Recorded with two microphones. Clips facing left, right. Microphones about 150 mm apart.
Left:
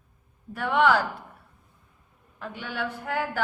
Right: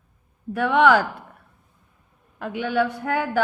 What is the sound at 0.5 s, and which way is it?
Speech, 70° right (ahead or behind).